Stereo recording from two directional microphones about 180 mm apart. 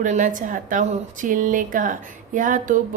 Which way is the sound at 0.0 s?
45° right (ahead or behind).